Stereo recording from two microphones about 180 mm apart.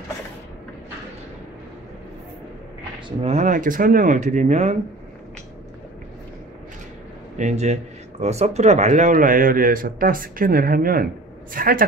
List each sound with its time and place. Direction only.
3.1 s speech: 40° right (ahead or behind)
7.3 s speech: 40° right (ahead or behind)